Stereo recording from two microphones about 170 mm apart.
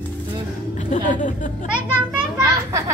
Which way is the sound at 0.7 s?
45° left (ahead or behind).